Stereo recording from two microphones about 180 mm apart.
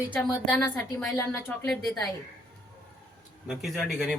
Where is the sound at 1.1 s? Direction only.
15° left (ahead or behind).